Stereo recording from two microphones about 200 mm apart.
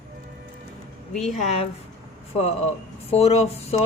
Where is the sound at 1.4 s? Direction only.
30° left (ahead or behind).